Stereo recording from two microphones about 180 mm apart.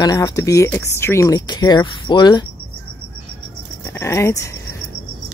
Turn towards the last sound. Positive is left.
turn(degrees=15)  # may be behind; listen again after turning